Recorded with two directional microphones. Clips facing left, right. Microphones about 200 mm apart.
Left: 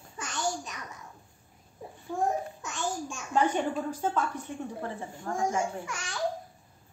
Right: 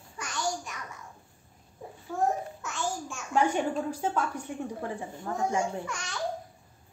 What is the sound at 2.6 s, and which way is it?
Babbling, 15° left (ahead or behind).